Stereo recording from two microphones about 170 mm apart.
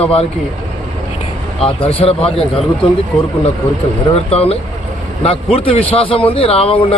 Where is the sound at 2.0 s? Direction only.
35° left (ahead or behind).